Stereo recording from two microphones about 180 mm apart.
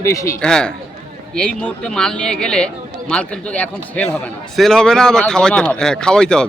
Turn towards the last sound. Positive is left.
turn(degrees=5)  # may be behind; listen again after turning